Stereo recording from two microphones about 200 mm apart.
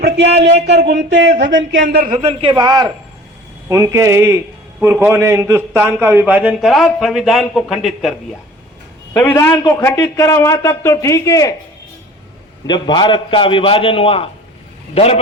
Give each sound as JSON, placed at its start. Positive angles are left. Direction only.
{"t": 0.0, "sound": "speech", "side_deg": -60}
{"t": 1.8, "sound": "speech", "side_deg": -45}
{"t": 2.1, "sound": "a man's voice", "side_deg": -30}
{"t": 9.1, "sound": "a man's voice", "side_deg": 10}
{"t": 12.6, "sound": "a man's voice", "side_deg": 20}